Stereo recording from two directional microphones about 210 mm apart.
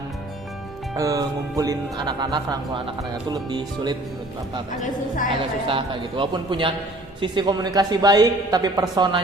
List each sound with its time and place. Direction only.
0.9 s speech: 15° right (ahead or behind)
5.4 s speech: 25° right (ahead or behind)